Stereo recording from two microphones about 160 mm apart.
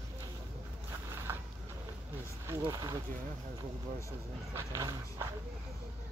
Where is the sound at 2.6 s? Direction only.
25° right (ahead or behind).